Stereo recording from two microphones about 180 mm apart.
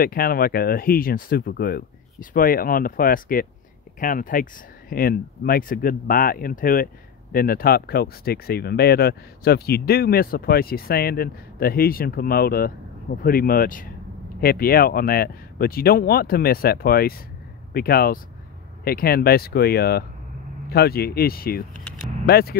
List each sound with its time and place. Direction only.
0.0 s speech: 55° left (ahead or behind)